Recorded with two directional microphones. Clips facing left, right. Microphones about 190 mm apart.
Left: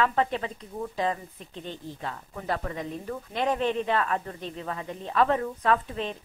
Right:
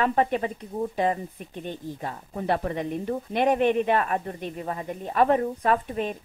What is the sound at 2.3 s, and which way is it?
Speech, 30° right (ahead or behind).